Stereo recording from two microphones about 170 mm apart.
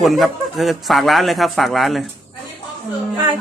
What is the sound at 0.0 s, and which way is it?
Speech, centre (ahead or behind).